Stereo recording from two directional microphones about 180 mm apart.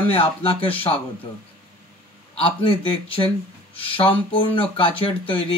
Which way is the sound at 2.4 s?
30° left (ahead or behind).